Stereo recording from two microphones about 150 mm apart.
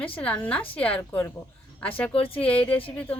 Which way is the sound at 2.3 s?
10° left (ahead or behind).